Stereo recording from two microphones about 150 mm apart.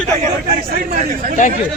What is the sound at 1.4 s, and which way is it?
Speech, 60° left (ahead or behind).